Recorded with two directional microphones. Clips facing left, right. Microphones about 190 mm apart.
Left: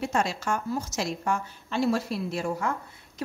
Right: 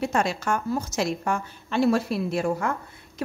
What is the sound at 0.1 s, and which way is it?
A woman's voice, 60° right (ahead or behind).